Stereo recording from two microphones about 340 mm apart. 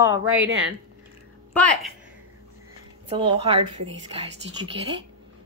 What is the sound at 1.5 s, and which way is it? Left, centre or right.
Speech, centre.